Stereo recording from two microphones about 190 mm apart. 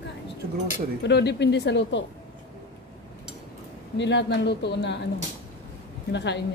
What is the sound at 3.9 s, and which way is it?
Speech, 65° left (ahead or behind).